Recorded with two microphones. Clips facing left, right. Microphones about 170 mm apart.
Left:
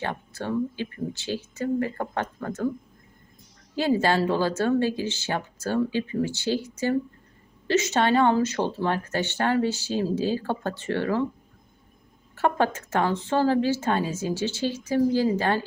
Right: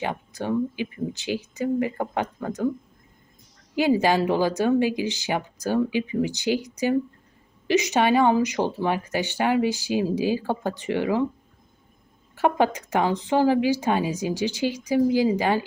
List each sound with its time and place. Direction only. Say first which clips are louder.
0.0 s speech: right 2 dB; 15° right (ahead or behind)
3.8 s speech: right 2 dB; 15° right (ahead or behind)
7.7 s speech: right 2 dB; 15° right (ahead or behind)
12.3 s speech: right 2 dB; 15° right (ahead or behind)